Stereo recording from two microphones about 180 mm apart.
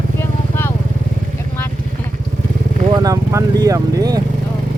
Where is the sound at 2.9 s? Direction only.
20° right (ahead or behind).